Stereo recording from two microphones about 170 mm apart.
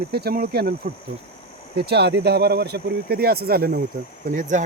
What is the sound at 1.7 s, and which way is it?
Speech, 75° right (ahead or behind).